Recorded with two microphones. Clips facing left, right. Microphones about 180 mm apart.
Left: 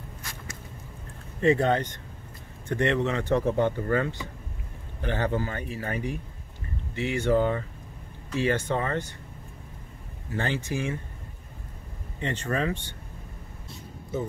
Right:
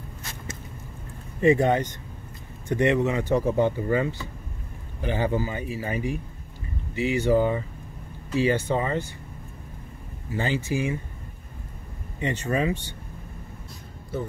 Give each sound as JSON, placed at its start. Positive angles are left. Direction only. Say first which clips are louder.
{"t": 0.2, "sound": "a sound", "louder": "right 5 dB", "side_deg": -20}
{"t": 1.4, "sound": "speech", "louder": "right 3 dB", "side_deg": -10}
{"t": 10.3, "sound": "speech", "louder": "right 3 dB", "side_deg": -10}
{"t": 12.2, "sound": "speech", "louder": "right 3 dB", "side_deg": -10}